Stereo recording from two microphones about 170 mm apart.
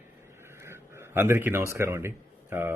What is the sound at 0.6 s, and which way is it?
A man's voice, 15° right (ahead or behind).